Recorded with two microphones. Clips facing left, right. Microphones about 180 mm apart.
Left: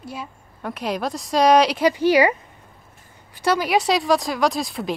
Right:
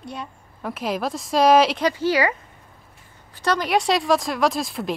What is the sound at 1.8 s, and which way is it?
Speech, 15° left (ahead or behind).